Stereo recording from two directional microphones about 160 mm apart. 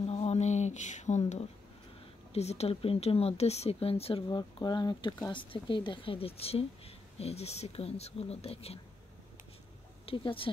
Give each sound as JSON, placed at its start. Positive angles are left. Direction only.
{"t": 0.0, "sound": "a sound", "side_deg": 40}
{"t": 2.3, "sound": "speech", "side_deg": 40}
{"t": 10.0, "sound": "speech", "side_deg": 35}